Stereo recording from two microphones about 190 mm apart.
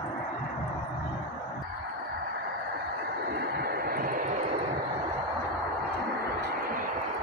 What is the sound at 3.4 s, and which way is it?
Vehicle, 55° right (ahead or behind).